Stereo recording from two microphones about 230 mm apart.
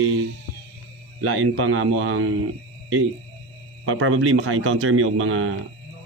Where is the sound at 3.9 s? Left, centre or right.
Right.